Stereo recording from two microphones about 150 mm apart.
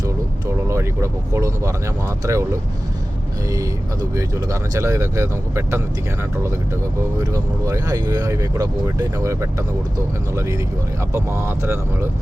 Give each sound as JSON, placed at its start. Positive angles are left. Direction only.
{"t": 0.4, "sound": "speech", "side_deg": -20}
{"t": 4.1, "sound": "speech", "side_deg": -20}
{"t": 7.2, "sound": "speech", "side_deg": -20}